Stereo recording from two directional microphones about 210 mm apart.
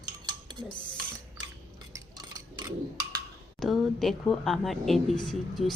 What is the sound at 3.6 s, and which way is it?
A woman's voice, centre (ahead or behind).